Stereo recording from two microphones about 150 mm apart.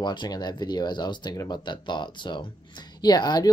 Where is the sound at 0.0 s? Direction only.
30° left (ahead or behind).